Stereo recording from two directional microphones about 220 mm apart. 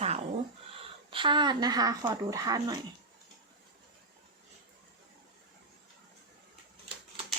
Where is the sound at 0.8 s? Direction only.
20° right (ahead or behind).